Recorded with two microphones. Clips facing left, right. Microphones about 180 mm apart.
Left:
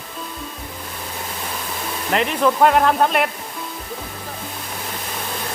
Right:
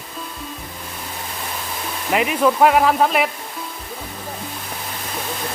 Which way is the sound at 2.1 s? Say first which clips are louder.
Right 1 dB; 5° right (ahead or behind).